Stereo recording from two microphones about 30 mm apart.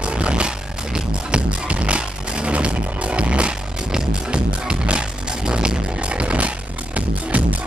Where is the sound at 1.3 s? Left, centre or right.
Right.